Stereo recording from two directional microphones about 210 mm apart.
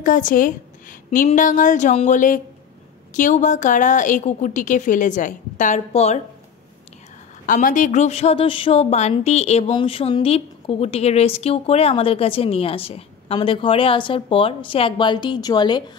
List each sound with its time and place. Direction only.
0.0 s a woman's voice: 40° left (ahead or behind)
7.4 s speech: 40° left (ahead or behind); by 15.8 s 20° left (ahead or behind)